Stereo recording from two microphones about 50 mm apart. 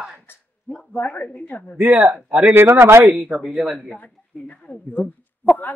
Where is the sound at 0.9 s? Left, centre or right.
Left.